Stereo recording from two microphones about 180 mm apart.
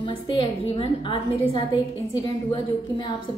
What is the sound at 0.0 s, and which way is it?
A woman's voice, 25° left (ahead or behind).